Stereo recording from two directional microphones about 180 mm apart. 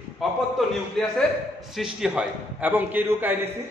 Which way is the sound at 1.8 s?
5° right (ahead or behind).